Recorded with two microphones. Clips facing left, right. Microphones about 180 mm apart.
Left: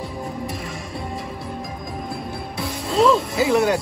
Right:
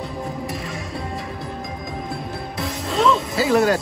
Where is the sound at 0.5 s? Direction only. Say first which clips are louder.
Right 1 dB; centre (ahead or behind).